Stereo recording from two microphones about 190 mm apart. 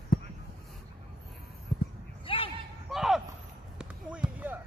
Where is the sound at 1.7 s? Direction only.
25° left (ahead or behind).